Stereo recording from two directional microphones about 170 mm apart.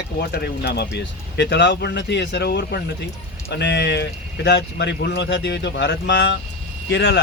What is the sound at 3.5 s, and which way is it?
A man's voice, 85° left.